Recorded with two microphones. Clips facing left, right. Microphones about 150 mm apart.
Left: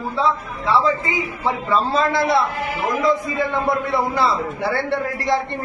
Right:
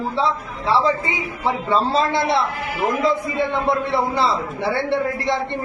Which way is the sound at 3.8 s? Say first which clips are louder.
Even; 30° right (ahead or behind).